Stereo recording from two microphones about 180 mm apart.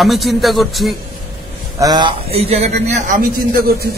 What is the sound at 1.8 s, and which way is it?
A man's voice, 20° right (ahead or behind).